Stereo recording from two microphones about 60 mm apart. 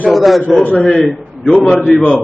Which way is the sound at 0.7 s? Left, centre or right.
Centre.